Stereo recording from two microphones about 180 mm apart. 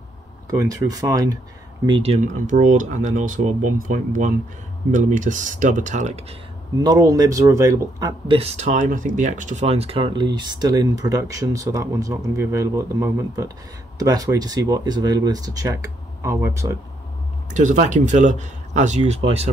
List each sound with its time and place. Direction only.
0.5 s speech: 20° right (ahead or behind)
1.9 s speech: 30° right (ahead or behind)
6.8 s speech: 20° right (ahead or behind)
8.4 s speech: 35° right (ahead or behind); by 16.7 s 15° right (ahead or behind)
17.5 s speech: 45° right (ahead or behind)